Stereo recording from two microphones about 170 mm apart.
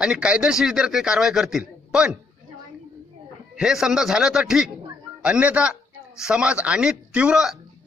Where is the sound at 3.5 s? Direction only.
5° right (ahead or behind).